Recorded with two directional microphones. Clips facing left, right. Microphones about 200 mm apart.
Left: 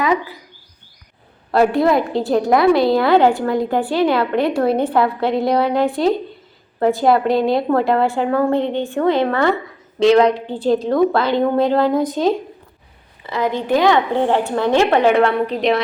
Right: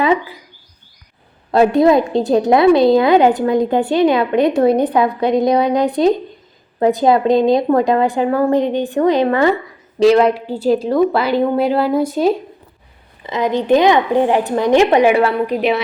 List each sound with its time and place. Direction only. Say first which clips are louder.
0.0 s speech: right 3 dB; 25° right (ahead or behind)
1.5 s a woman's voice: right 3 dB; 20° right (ahead or behind)